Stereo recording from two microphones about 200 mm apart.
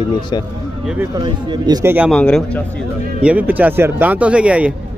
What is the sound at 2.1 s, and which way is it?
Speech, 5° left (ahead or behind).